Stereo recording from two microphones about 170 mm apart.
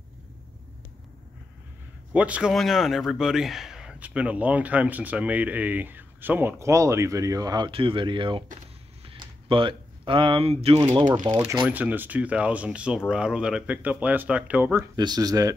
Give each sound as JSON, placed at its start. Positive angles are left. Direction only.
{"t": 2.1, "sound": "a man's voice", "side_deg": -10}
{"t": 9.0, "sound": "a sound", "side_deg": -30}
{"t": 11.2, "sound": "a man's voice", "side_deg": -15}
{"t": 11.5, "sound": "a man's voice", "side_deg": -5}